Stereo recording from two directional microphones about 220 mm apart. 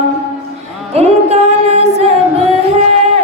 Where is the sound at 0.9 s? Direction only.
30° right (ahead or behind).